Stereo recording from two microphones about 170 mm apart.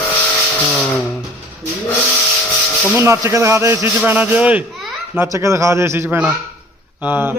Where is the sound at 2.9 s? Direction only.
15° right (ahead or behind).